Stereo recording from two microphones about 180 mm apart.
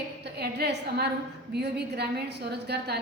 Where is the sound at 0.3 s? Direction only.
65° right (ahead or behind).